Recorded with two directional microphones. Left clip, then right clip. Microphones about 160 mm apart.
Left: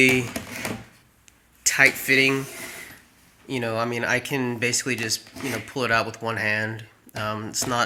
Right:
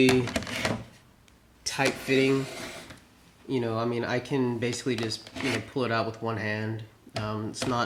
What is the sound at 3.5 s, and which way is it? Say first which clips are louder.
Speech: left 3 dB; 20° left (ahead or behind).